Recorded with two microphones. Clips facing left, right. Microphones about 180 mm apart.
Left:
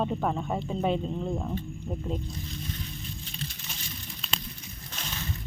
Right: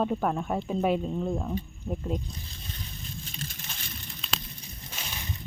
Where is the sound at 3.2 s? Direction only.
45° right (ahead or behind).